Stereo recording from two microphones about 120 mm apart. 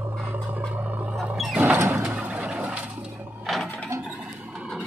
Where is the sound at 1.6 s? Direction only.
20° right (ahead or behind).